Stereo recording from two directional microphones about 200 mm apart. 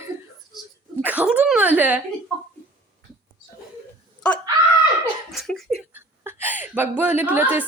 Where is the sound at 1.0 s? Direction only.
10° right (ahead or behind).